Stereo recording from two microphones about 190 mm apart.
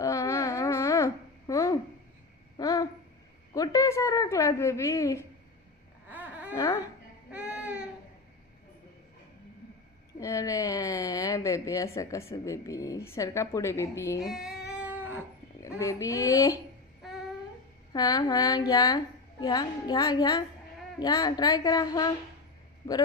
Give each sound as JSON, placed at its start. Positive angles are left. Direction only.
{"t": 0.0, "sound": "a sound", "side_deg": 15}
{"t": 6.1, "sound": "a sound", "side_deg": -10}
{"t": 6.5, "sound": "a woman's voice", "side_deg": 20}
{"t": 7.3, "sound": "baby cry", "side_deg": -5}
{"t": 10.2, "sound": "a woman's voice", "side_deg": 15}
{"t": 14.2, "sound": "cat", "side_deg": 0}
{"t": 15.8, "sound": "a woman's voice", "side_deg": 15}
{"t": 17.9, "sound": "a woman's voice", "side_deg": 20}